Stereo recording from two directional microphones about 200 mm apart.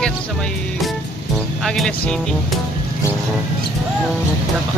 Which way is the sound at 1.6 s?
Centre (ahead or behind).